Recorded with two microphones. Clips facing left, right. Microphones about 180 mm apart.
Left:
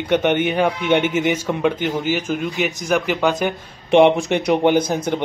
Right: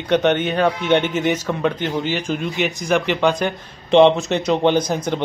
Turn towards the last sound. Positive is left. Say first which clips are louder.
# left 1 dB
turn(degrees=10)  # may be behind; listen again after turning